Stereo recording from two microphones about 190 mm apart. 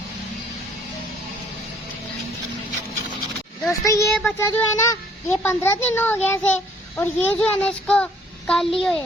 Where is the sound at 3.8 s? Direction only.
15° left (ahead or behind).